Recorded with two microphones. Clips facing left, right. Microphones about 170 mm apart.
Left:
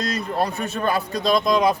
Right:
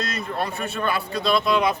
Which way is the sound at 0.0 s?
35° left (ahead or behind).